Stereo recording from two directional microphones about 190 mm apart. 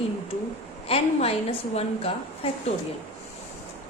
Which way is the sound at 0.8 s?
30° left (ahead or behind).